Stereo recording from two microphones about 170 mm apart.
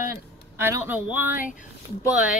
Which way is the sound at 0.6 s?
15° right (ahead or behind).